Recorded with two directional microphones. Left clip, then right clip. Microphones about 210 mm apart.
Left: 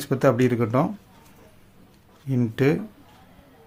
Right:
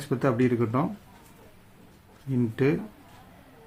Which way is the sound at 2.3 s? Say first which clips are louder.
Left 3 dB; 55° left (ahead or behind).